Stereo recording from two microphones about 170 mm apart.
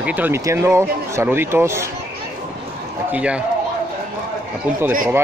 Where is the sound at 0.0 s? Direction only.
10° right (ahead or behind).